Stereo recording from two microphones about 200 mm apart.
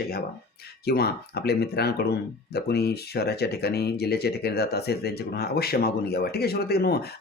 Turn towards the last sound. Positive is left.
turn(degrees=50)  # may be behind; listen again after turning